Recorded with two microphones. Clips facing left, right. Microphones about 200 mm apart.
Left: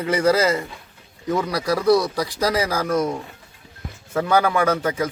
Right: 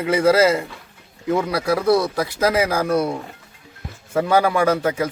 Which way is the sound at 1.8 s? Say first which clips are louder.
Left 1 dB; 25° right (ahead or behind).